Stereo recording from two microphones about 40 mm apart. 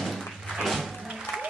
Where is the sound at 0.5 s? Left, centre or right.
Centre.